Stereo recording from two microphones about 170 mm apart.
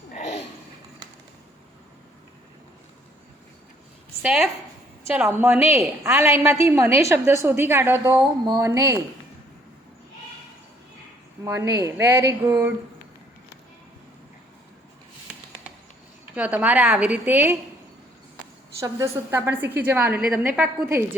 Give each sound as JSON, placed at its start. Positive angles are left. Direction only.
{"t": 0.1, "sound": "a sound", "side_deg": 40}
{"t": 4.2, "sound": "a woman's voice", "side_deg": -5}
{"t": 11.4, "sound": "a woman's voice", "side_deg": -20}
{"t": 16.3, "sound": "a woman's voice", "side_deg": -10}
{"t": 18.8, "sound": "a woman's voice", "side_deg": -15}